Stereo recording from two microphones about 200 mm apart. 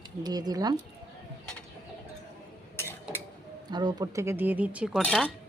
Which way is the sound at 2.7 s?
10° left (ahead or behind).